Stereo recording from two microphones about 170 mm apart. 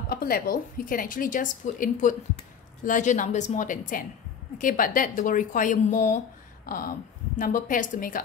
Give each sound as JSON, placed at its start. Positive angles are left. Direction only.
{"t": 0.1, "sound": "speech", "side_deg": 60}